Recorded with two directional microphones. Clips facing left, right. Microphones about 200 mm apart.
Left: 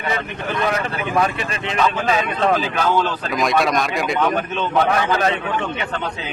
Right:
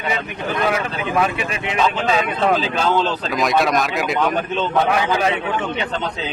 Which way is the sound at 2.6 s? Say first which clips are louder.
Even; 25° right (ahead or behind).